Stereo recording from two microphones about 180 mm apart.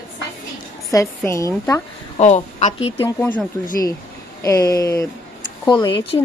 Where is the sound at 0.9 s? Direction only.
15° left (ahead or behind).